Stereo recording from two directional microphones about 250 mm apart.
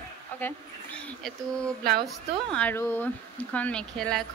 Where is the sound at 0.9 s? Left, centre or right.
Centre.